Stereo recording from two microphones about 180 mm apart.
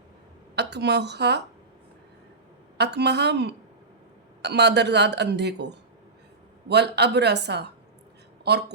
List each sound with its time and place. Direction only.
0.5 s speech: 70° right (ahead or behind)
2.7 s speech: 70° right (ahead or behind)